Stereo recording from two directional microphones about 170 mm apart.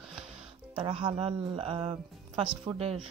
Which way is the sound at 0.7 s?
35° right (ahead or behind).